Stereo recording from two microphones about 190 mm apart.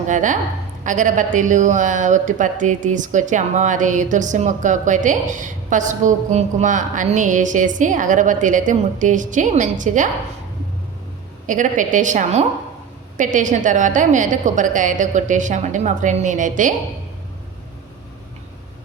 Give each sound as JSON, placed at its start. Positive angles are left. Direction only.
{"t": 0.1, "sound": "a woman's voice", "side_deg": -40}
{"t": 11.4, "sound": "a woman's voice", "side_deg": -40}